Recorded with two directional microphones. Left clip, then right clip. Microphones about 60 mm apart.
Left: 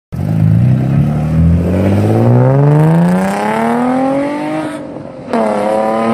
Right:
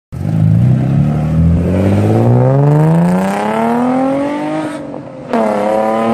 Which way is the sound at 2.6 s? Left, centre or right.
Left.